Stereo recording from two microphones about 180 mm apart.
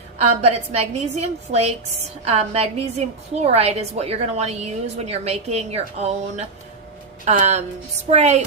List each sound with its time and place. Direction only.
0.4 s a woman's voice: 35° right (ahead or behind)